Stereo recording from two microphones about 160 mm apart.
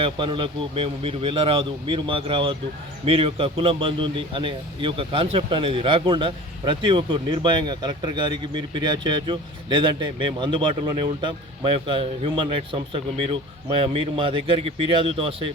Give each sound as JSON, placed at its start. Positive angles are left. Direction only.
{"t": 0.0, "sound": "a man's voice", "side_deg": -30}